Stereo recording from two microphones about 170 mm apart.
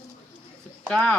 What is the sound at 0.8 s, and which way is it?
Speech, 5° left (ahead or behind).